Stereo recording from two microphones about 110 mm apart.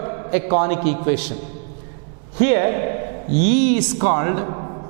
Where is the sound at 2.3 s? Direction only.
10° right (ahead or behind).